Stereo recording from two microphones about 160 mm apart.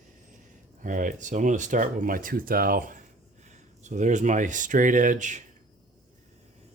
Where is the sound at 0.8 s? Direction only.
55° right (ahead or behind).